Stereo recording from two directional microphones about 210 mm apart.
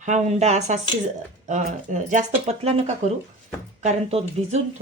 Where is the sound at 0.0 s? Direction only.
35° right (ahead or behind).